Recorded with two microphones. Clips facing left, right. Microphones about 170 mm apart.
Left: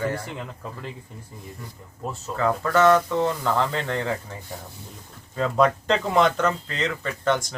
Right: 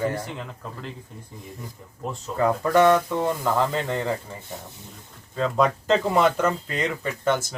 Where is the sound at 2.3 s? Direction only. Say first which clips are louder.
Right 2 dB; 15° right (ahead or behind).